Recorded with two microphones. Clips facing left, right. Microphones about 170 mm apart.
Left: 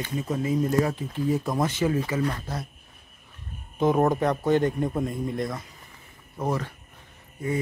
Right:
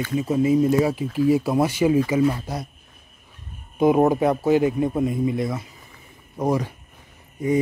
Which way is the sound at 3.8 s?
10° right (ahead or behind).